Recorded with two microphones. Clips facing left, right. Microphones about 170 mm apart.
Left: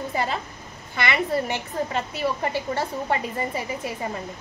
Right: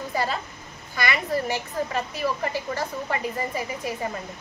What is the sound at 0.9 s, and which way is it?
Speech, 25° left (ahead or behind).